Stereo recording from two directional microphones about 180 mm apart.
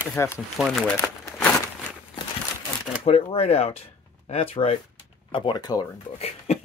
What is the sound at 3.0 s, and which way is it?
Speech, 30° left (ahead or behind).